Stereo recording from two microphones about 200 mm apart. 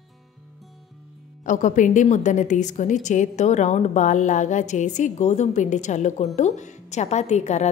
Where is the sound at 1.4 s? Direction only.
40° left (ahead or behind).